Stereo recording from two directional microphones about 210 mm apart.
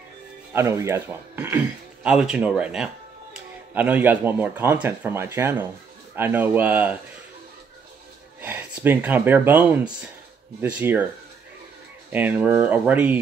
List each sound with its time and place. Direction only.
0.5 s speech: 10° right (ahead or behind)
8.4 s speech: 10° right (ahead or behind)
12.1 s speech: 10° right (ahead or behind)